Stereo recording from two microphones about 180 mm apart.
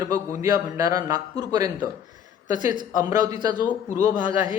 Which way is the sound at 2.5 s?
45° left (ahead or behind).